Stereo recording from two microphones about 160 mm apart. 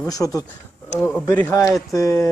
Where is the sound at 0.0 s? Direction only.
20° left (ahead or behind).